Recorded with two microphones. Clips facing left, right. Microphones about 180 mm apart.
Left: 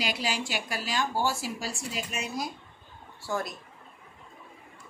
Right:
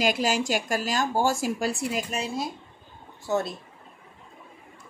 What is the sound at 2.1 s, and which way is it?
Speech, 30° right (ahead or behind).